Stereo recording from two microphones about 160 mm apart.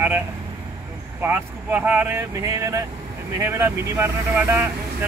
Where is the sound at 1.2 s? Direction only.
10° right (ahead or behind).